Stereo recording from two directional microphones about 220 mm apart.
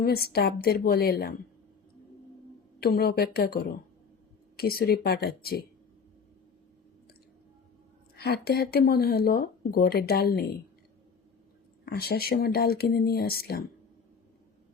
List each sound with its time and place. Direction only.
0.0 s speech: 45° left (ahead or behind)
2.8 s speech: 45° left (ahead or behind)
8.1 s speech: 45° left (ahead or behind)
11.9 s speech: 45° left (ahead or behind)